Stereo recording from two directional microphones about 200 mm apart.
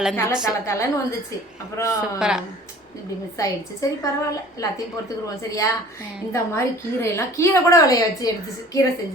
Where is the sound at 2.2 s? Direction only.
5° right (ahead or behind).